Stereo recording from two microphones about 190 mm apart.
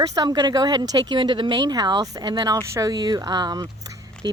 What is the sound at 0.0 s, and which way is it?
Speech, 20° right (ahead or behind).